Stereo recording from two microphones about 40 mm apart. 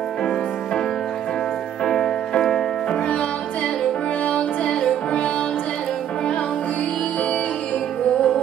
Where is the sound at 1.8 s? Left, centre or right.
Centre.